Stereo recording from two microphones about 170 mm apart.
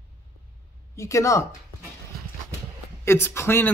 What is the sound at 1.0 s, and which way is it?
Speech, 20° left (ahead or behind).